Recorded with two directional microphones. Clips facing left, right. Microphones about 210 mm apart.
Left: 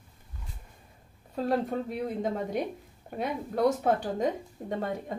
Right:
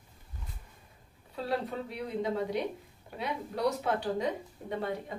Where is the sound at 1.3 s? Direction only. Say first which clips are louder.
Left 5 dB; 45° left (ahead or behind).